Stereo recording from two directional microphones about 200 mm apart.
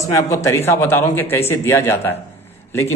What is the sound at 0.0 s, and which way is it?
A man's voice, 15° left (ahead or behind).